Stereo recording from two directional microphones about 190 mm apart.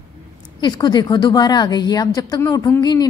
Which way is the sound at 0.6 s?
20° left (ahead or behind).